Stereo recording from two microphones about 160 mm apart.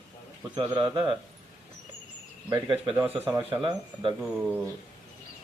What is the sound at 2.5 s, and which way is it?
Speech, 25° right (ahead or behind).